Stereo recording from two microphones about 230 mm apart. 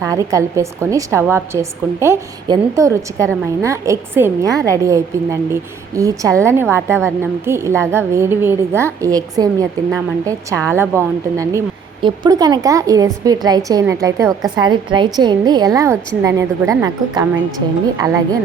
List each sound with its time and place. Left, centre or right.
0.0 s a woman's voice: centre